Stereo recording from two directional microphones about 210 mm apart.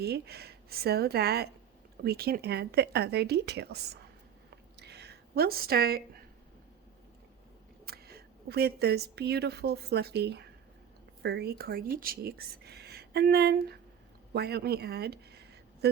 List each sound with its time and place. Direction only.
0.0 s speech: 50° right (ahead or behind)
4.8 s a sound: 50° right (ahead or behind)
7.9 s a woman's voice: 50° right (ahead or behind)